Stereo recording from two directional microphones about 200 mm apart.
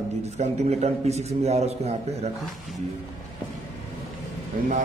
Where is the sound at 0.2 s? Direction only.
35° right (ahead or behind).